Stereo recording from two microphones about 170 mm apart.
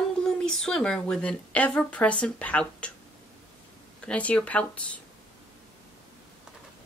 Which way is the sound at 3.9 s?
5° left (ahead or behind).